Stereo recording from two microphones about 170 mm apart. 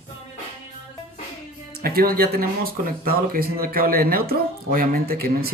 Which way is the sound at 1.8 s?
60° right (ahead or behind).